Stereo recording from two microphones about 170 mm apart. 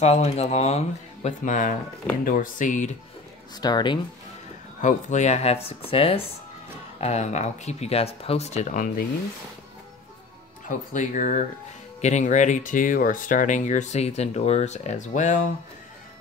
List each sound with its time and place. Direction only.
0.0 s speech: 40° left (ahead or behind)
3.6 s speech: 25° left (ahead or behind)
4.8 s speech: 45° left (ahead or behind)
10.7 s speech: 50° left (ahead or behind)